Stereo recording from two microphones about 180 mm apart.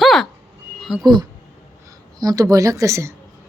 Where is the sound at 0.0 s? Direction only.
Centre (ahead or behind).